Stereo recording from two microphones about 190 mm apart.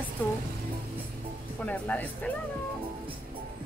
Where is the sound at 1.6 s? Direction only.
10° left (ahead or behind).